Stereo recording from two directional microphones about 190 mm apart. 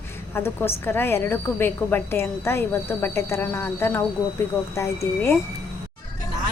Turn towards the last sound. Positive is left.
turn(degrees=15)  # may be behind; listen again after turning